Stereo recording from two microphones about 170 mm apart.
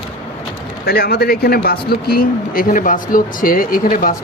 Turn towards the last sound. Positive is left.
turn(degrees=55)  # may be behind; listen again after turning